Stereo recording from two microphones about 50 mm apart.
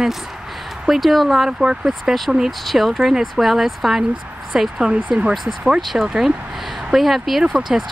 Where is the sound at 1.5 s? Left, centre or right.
Centre.